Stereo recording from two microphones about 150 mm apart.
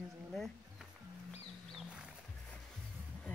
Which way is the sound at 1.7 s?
5° right (ahead or behind).